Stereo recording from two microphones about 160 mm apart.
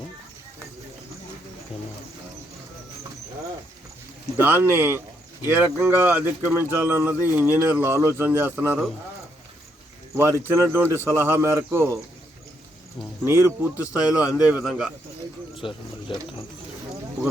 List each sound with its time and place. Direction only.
4.4 s speech: 15° right (ahead or behind)
10.2 s speech: 15° right (ahead or behind)
13.2 s a man's voice: 15° right (ahead or behind)
15.5 s speech: 30° left (ahead or behind)